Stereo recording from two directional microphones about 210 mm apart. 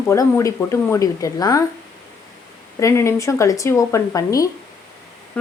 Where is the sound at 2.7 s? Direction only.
15° left (ahead or behind).